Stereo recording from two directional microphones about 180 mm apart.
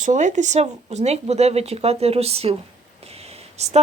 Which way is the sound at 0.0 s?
45° right (ahead or behind).